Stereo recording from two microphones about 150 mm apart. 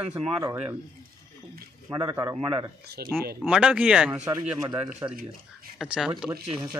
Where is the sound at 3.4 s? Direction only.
5° right (ahead or behind).